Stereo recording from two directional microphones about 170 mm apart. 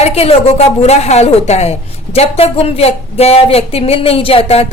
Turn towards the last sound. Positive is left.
turn(degrees=35)  # may be behind; listen again after turning